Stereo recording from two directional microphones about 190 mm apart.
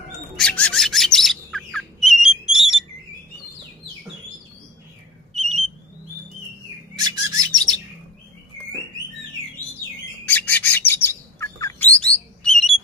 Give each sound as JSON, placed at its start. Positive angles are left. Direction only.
{"t": 0.4, "sound": "bird", "side_deg": 5}
{"t": 5.3, "sound": "whistle", "side_deg": -35}
{"t": 7.0, "sound": "bird", "side_deg": -20}
{"t": 10.2, "sound": "chirp", "side_deg": 10}